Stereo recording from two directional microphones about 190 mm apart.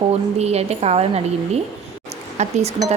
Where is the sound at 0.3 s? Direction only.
35° right (ahead or behind).